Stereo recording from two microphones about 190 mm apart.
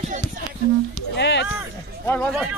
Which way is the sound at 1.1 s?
65° left (ahead or behind).